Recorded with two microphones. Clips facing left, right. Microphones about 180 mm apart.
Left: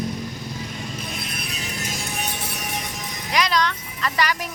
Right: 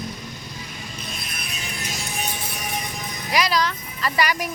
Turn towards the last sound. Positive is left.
turn(degrees=-10)  # may be behind; listen again after turning